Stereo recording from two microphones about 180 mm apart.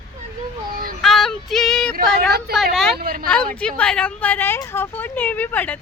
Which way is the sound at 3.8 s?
5° left (ahead or behind).